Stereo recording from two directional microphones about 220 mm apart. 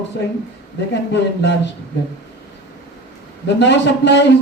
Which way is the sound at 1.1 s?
50° left (ahead or behind).